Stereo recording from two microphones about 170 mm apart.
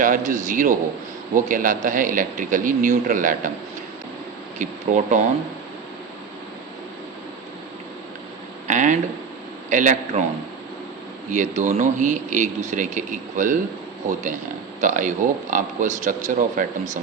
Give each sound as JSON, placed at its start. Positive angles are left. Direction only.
{"t": 0.0, "sound": "a man's voice", "side_deg": -50}
{"t": 4.5, "sound": "a man's voice", "side_deg": -45}
{"t": 8.6, "sound": "a man's voice", "side_deg": -45}
{"t": 11.3, "sound": "a man's voice", "side_deg": -50}